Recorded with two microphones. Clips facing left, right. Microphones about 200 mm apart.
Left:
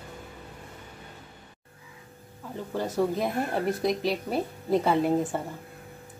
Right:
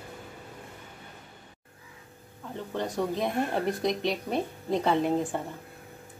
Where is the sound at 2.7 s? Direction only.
5° left (ahead or behind).